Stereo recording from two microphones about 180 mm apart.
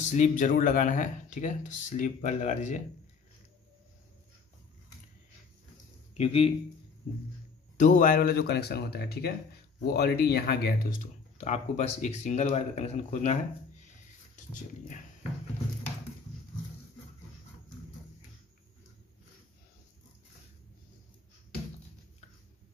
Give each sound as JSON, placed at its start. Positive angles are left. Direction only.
{"t": 0.0, "sound": "speech", "side_deg": 40}
{"t": 6.1, "sound": "speech", "side_deg": 35}
{"t": 7.7, "sound": "speech", "side_deg": 45}
{"t": 11.3, "sound": "speech", "side_deg": 40}